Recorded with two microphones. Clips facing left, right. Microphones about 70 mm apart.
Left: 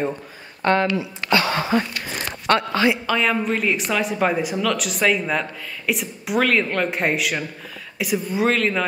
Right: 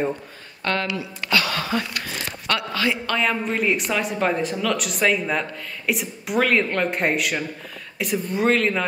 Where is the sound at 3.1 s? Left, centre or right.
Centre.